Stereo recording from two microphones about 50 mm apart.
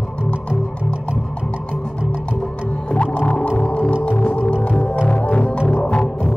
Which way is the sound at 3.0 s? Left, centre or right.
Left.